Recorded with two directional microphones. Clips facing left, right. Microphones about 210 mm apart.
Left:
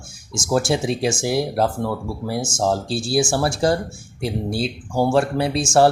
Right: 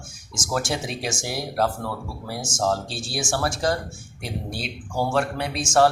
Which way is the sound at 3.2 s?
30° left (ahead or behind).